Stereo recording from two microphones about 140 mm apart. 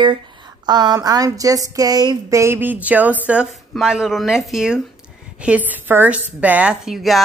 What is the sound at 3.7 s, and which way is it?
A woman's voice, 5° right (ahead or behind).